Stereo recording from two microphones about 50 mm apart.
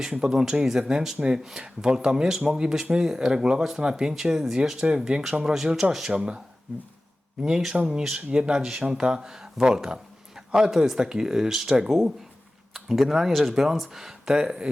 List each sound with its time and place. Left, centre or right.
0.2 s speech: centre
7.4 s speech: centre